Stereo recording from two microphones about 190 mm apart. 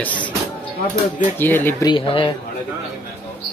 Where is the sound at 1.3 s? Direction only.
10° left (ahead or behind).